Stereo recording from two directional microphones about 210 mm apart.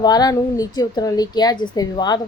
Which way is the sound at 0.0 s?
20° left (ahead or behind).